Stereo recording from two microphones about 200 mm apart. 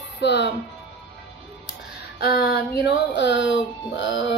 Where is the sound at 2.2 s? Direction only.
50° left (ahead or behind).